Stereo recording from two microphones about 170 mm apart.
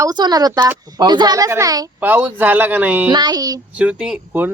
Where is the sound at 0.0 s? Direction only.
25° right (ahead or behind).